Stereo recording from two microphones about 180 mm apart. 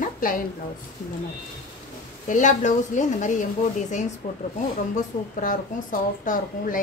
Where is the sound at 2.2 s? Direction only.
45° left (ahead or behind).